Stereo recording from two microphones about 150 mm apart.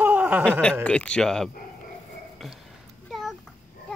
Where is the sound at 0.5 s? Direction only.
5° left (ahead or behind).